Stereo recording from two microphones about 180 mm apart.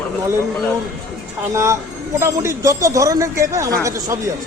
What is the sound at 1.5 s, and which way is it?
Speech, 15° right (ahead or behind).